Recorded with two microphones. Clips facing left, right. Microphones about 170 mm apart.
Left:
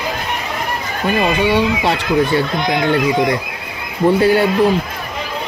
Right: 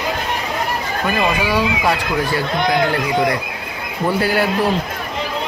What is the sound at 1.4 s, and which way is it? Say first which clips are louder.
Speech: left 3 dB; 25° left (ahead or behind).